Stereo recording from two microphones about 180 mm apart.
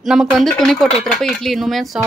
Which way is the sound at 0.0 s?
Centre (ahead or behind).